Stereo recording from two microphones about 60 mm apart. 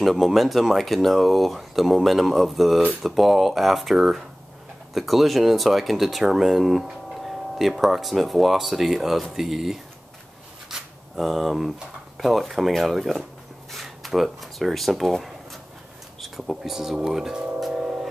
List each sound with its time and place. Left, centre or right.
0.0 s speech: centre
10.7 s a sound: centre
12.2 s speech: centre
17.7 s singing bowl: centre